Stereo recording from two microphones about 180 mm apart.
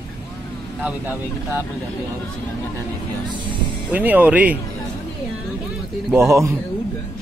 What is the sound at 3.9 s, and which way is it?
Speech, 10° right (ahead or behind).